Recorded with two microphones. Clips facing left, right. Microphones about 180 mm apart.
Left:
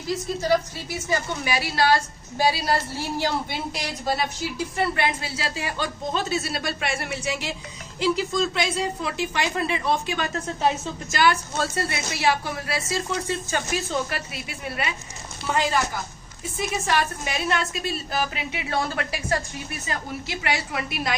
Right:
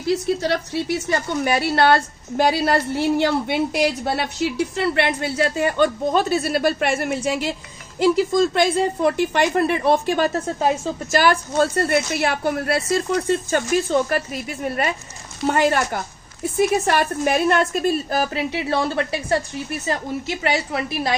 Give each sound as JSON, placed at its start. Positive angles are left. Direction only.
{"t": 0.0, "sound": "a woman's voice", "side_deg": -70}
{"t": 11.1, "sound": "a woman's voice", "side_deg": -50}
{"t": 15.4, "sound": "a woman's voice", "side_deg": -65}
{"t": 20.4, "sound": "a woman's voice", "side_deg": -30}